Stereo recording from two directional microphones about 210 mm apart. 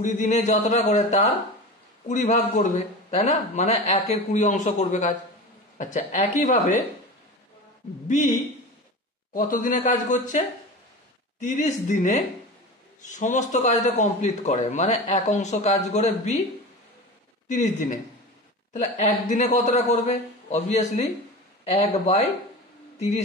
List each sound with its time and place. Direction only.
0.0 s a man's voice: 35° left (ahead or behind)
9.3 s a man's voice: 40° left (ahead or behind)
11.4 s a man's voice: 35° left (ahead or behind)
17.5 s a man's voice: 35° left (ahead or behind)